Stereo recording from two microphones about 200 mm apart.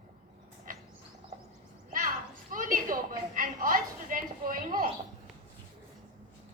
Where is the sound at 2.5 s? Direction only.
40° right (ahead or behind).